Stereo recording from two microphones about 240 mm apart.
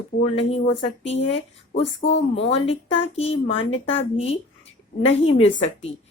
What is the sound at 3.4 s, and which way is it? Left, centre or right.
Speech, left.